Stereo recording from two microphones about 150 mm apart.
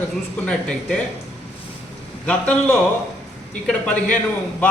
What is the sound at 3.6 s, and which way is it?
Speech, 10° left (ahead or behind).